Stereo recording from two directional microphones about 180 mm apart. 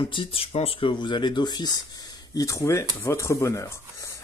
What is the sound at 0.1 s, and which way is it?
Speech, 30° left (ahead or behind).